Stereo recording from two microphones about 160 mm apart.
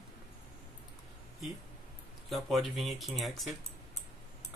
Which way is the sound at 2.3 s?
Centre (ahead or behind).